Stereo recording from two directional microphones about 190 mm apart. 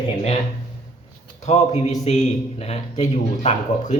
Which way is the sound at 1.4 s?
35° left (ahead or behind).